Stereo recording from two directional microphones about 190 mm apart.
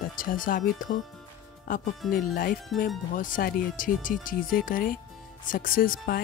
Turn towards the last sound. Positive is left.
turn(degrees=50)  # may be behind; listen again after turning